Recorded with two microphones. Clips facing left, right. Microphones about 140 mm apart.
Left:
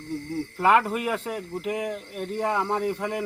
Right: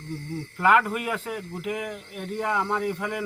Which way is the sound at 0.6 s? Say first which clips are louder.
Even; 30° left (ahead or behind).